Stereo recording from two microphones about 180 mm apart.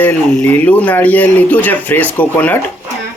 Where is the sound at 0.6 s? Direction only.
10° left (ahead or behind).